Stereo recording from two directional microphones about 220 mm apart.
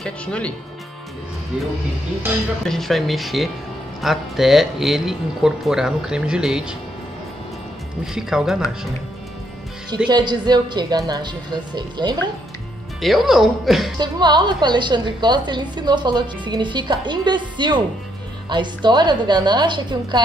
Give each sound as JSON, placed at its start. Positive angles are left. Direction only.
{"t": 0.0, "sound": "speech", "side_deg": 5}
{"t": 2.6, "sound": "speech", "side_deg": 0}
{"t": 8.0, "sound": "speech", "side_deg": 0}
{"t": 10.0, "sound": "a woman's voice", "side_deg": -20}
{"t": 13.0, "sound": "speech", "side_deg": 0}
{"t": 13.9, "sound": "a woman's voice", "side_deg": -20}